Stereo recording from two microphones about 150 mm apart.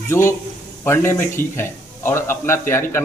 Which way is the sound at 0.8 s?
15° left (ahead or behind).